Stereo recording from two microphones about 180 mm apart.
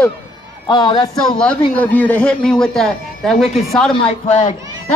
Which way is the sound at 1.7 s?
10° left (ahead or behind).